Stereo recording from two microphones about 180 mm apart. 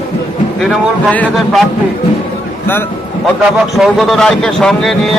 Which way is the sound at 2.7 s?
10° left (ahead or behind).